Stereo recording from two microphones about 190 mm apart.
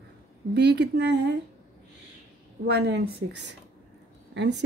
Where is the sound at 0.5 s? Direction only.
65° right (ahead or behind).